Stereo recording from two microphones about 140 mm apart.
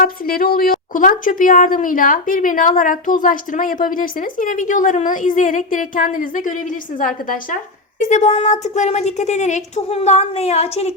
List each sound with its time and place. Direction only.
0.0 s a woman's voice: 90° left; by 6.5 s 70° left (ahead or behind)
8.0 s a woman's voice: 60° left (ahead or behind)